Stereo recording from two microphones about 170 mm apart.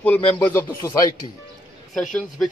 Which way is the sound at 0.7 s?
25° left (ahead or behind).